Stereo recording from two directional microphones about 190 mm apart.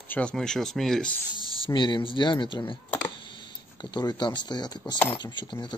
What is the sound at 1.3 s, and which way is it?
Speech, 25° left (ahead or behind).